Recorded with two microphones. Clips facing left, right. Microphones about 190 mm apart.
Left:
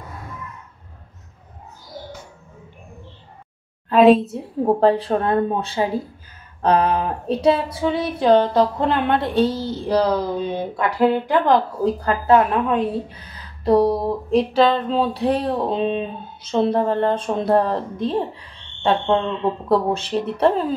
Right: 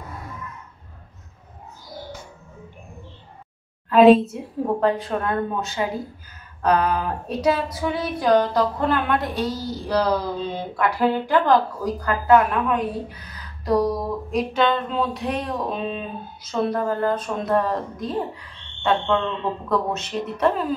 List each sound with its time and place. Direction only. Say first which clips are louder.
3.9 s a woman's voice: even; centre (ahead or behind)
4.6 s a woman's voice: left 5 dB; 30° left (ahead or behind)